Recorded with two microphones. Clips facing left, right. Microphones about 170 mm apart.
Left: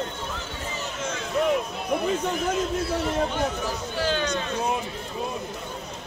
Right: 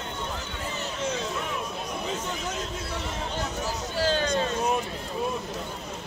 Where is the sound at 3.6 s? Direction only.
35° right (ahead or behind).